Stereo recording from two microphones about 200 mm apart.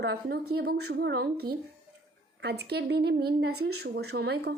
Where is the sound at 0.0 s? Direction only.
55° right (ahead or behind).